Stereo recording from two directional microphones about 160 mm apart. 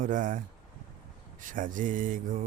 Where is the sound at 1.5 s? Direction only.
55° right (ahead or behind).